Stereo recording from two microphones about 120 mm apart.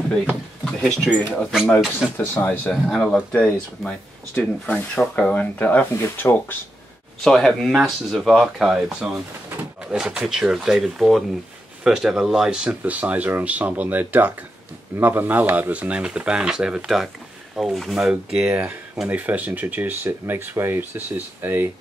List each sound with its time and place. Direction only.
0.1 s speech: 5° left (ahead or behind)
2.1 s speech: 15° left (ahead or behind)
2.7 s speech: 5° left (ahead or behind); by 6.3 s 20° left (ahead or behind)
7.2 s speech: 5° left (ahead or behind); by 21.6 s 20° right (ahead or behind)